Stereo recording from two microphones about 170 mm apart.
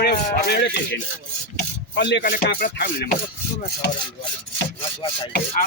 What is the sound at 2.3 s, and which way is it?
Speech, 55° left (ahead or behind).